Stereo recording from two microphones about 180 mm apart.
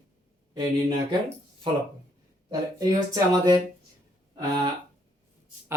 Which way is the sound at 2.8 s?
20° right (ahead or behind).